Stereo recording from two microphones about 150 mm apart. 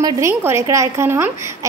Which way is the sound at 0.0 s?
20° right (ahead or behind).